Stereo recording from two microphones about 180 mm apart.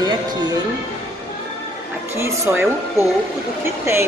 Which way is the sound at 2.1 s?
15° right (ahead or behind).